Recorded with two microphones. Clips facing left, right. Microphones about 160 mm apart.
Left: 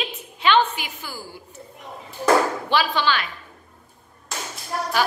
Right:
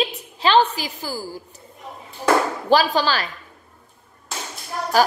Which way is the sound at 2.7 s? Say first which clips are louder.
Right 6 dB; 40° right (ahead or behind).